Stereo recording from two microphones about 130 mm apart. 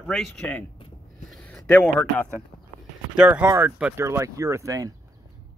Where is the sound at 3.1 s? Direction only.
10° right (ahead or behind).